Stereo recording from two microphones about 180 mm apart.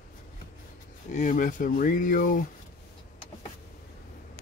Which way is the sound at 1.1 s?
45° left (ahead or behind).